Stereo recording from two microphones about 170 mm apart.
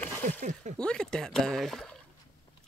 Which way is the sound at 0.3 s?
45° right (ahead or behind).